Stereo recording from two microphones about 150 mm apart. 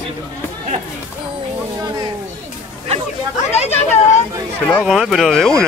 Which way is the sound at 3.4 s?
45° left (ahead or behind).